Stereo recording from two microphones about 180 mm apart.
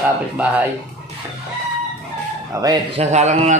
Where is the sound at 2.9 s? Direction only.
40° right (ahead or behind).